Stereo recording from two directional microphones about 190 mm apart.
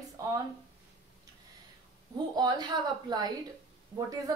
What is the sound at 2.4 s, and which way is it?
A woman's voice, 20° right (ahead or behind).